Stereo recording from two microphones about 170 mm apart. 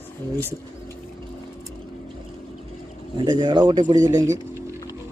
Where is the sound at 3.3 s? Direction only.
25° right (ahead or behind).